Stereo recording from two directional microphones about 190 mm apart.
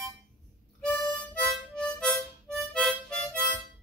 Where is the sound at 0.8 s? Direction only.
5° left (ahead or behind).